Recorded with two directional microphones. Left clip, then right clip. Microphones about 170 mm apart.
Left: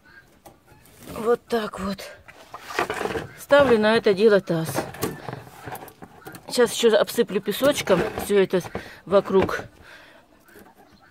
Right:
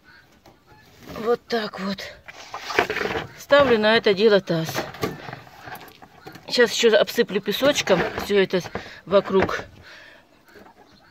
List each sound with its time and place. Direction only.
1.1 s speech: 10° left (ahead or behind)
2.2 s a sound: 35° right (ahead or behind)
3.3 s speech: 10° left (ahead or behind)
6.4 s speech: 5° left (ahead or behind)